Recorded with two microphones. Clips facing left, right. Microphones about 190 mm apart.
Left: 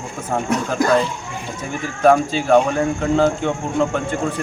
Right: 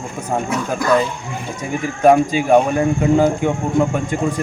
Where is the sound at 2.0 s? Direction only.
10° right (ahead or behind).